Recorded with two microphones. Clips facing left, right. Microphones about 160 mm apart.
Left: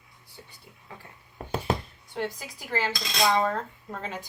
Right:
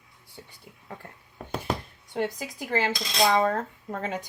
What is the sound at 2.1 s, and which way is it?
A woman's voice, 55° right (ahead or behind).